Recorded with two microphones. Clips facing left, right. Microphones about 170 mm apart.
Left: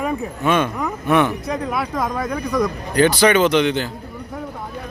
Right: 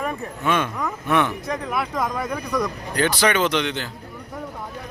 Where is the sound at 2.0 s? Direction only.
Centre (ahead or behind).